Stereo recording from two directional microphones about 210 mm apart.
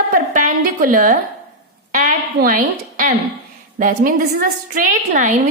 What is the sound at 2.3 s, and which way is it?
A woman's voice, 40° right (ahead or behind).